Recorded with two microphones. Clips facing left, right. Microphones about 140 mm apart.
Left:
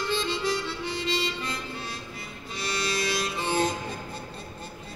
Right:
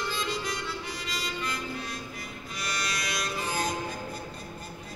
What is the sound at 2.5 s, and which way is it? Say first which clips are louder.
Music: left 5 dB; 30° left (ahead or behind).